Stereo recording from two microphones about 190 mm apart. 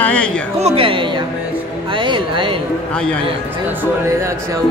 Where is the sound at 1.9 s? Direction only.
25° right (ahead or behind).